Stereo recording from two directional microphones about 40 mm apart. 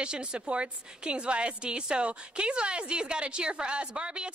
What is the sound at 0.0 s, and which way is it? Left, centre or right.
A woman's voice, right.